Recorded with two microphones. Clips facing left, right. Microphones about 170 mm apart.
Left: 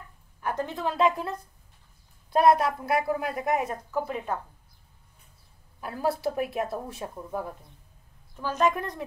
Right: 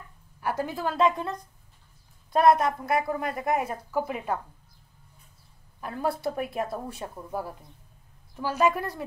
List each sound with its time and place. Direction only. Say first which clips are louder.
0.4 s a woman's voice: right 1 dB; 5° right (ahead or behind)
5.8 s a woman's voice: left 1 dB; 5° left (ahead or behind)